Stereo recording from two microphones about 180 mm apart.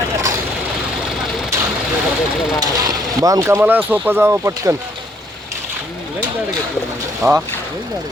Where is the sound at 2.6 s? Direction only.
20° right (ahead or behind).